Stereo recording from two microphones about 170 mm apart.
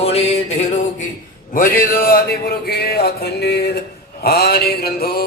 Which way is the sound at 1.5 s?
55° left (ahead or behind).